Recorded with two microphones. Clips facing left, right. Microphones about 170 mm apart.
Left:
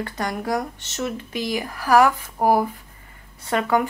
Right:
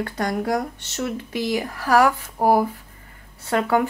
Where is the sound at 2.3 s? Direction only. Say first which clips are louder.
Right 1 dB; 10° right (ahead or behind).